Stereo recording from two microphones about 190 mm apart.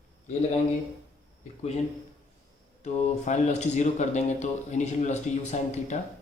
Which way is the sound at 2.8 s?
35° left (ahead or behind).